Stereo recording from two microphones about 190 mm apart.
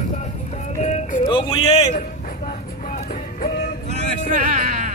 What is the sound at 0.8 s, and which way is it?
Music, 35° left (ahead or behind).